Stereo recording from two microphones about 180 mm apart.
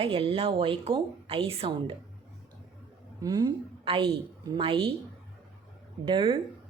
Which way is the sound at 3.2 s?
20° right (ahead or behind).